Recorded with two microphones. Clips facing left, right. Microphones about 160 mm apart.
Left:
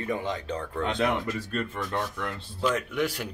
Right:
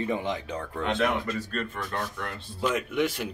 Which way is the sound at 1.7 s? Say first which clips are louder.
Left 2 dB; 25° left (ahead or behind).